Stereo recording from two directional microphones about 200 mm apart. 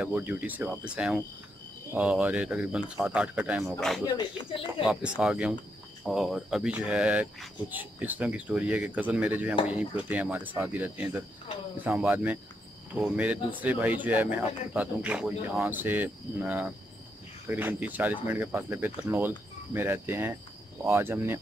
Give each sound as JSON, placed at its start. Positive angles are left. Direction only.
{"t": 0.0, "sound": "speech", "side_deg": -5}
{"t": 4.0, "sound": "speech", "side_deg": 25}
{"t": 4.8, "sound": "speech", "side_deg": -5}